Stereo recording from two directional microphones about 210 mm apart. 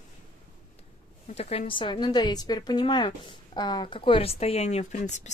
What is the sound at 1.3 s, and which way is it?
A woman's voice, 30° left (ahead or behind).